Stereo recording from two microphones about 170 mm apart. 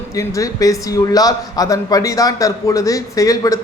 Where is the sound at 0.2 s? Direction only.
20° left (ahead or behind).